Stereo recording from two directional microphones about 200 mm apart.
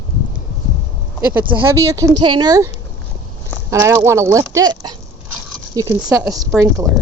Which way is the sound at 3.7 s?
15° right (ahead or behind).